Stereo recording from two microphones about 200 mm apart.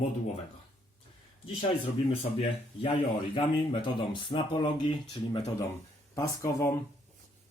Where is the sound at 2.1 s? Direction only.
30° left (ahead or behind).